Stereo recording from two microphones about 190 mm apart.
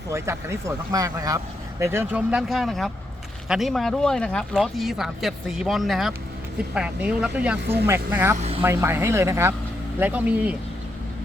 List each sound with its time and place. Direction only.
0.1 s speech: 15° right (ahead or behind)
8.4 s speech: 30° right (ahead or behind)
8.6 s speech: 15° right (ahead or behind)